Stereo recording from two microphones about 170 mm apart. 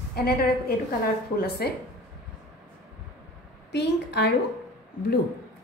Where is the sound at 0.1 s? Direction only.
65° left (ahead or behind).